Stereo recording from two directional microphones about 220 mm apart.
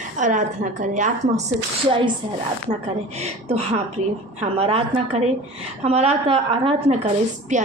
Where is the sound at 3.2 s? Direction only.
25° right (ahead or behind).